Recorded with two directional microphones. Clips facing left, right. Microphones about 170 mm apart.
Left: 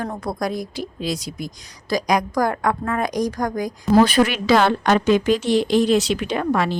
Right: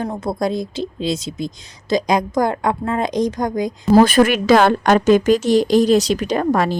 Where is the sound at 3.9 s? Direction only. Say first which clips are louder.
Right 3 dB; 45° right (ahead or behind).